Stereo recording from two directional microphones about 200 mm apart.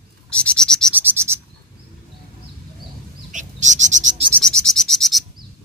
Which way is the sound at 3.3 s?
35° right (ahead or behind).